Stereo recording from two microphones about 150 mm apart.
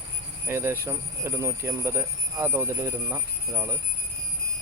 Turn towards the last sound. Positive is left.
turn(degrees=-15)  # may be behind; listen again after turning